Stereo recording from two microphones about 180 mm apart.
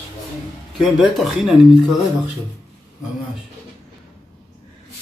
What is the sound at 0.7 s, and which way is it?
Speech, centre (ahead or behind).